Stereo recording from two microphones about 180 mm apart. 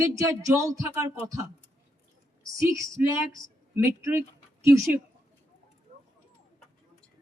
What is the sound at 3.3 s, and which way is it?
Speech, 15° right (ahead or behind).